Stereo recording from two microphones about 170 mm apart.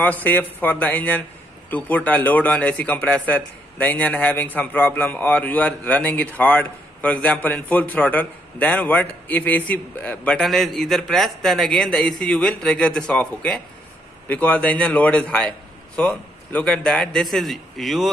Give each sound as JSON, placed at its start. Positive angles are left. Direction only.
{"t": 0.0, "sound": "a man's voice", "side_deg": 10}